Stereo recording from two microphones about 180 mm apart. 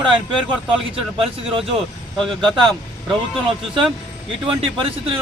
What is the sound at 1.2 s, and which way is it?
Speech, 30° right (ahead or behind).